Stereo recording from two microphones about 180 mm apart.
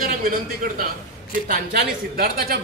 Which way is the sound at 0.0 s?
50° right (ahead or behind).